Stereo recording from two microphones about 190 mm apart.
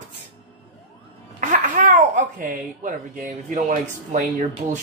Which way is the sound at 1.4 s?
45° right (ahead or behind).